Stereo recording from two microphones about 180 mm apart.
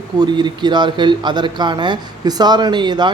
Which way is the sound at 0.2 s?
25° right (ahead or behind).